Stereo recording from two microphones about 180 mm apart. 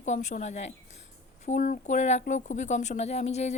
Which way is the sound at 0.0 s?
40° left (ahead or behind).